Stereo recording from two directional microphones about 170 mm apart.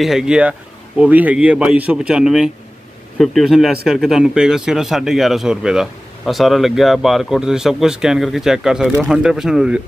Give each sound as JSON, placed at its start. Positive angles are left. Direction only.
{"t": 0.0, "sound": "speech", "side_deg": -5}